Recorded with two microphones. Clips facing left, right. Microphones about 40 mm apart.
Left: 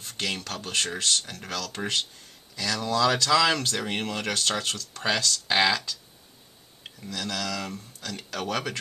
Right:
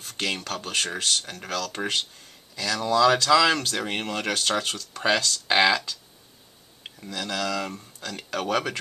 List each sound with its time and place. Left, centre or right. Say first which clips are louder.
0.2 s speech: right 2 dB; centre